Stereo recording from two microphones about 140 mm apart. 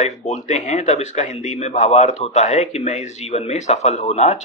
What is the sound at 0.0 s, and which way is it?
Speech, 55° left (ahead or behind).